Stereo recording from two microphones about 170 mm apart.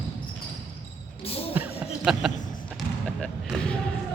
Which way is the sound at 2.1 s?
5° right (ahead or behind).